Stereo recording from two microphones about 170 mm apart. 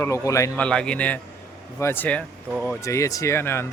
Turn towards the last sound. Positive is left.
turn(degrees=15)  # may be behind; listen again after turning